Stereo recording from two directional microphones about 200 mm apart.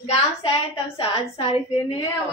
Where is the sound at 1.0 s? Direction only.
30° left (ahead or behind).